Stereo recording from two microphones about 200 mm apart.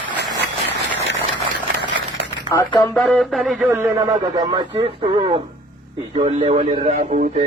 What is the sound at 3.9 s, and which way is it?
Speech, 20° right (ahead or behind).